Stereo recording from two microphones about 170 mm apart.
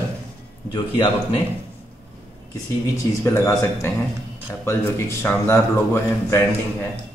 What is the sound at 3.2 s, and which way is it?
Speech, 15° left (ahead or behind).